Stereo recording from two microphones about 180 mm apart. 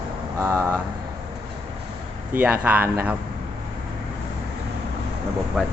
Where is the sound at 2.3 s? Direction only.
10° right (ahead or behind).